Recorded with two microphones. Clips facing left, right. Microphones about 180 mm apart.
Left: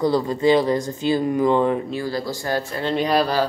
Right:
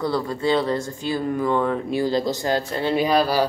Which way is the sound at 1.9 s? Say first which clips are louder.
Right 4 dB; 20° right (ahead or behind).